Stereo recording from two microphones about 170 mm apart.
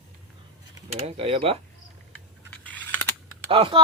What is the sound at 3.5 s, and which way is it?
Speech, 30° right (ahead or behind).